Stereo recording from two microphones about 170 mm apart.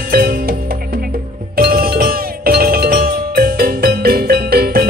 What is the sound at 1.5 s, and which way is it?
Music, 65° right (ahead or behind).